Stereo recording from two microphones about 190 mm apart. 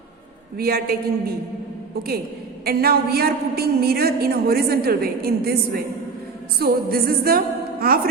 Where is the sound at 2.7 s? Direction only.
55° right (ahead or behind).